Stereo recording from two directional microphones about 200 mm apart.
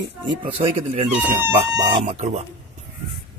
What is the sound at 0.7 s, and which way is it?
Speech, 30° right (ahead or behind).